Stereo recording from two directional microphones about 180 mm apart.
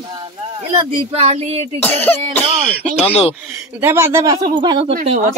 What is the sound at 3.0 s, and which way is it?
Speech, 35° left (ahead or behind).